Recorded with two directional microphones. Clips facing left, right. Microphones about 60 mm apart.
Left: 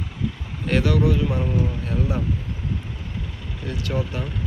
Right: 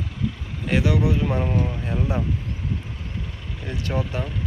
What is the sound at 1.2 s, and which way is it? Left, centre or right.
Speech, right.